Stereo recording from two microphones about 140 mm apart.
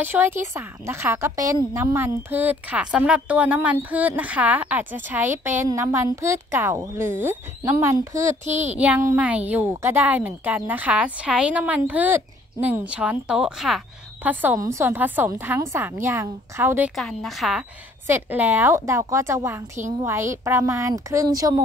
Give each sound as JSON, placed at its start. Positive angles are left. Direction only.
{"t": 0.0, "sound": "a woman's voice", "side_deg": -15}
{"t": 8.2, "sound": "speech", "side_deg": -60}
{"t": 8.7, "sound": "a woman's voice", "side_deg": -10}
{"t": 14.2, "sound": "a woman's voice", "side_deg": -10}
{"t": 16.9, "sound": "a woman's voice", "side_deg": 0}
{"t": 18.0, "sound": "a woman's voice", "side_deg": -15}